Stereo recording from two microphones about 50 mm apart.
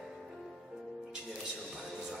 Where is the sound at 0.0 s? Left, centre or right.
Centre.